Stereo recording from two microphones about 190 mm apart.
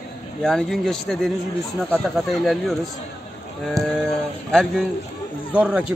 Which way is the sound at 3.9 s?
5° left (ahead or behind).